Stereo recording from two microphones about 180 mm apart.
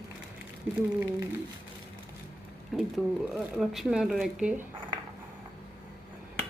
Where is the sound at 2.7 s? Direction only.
Centre (ahead or behind).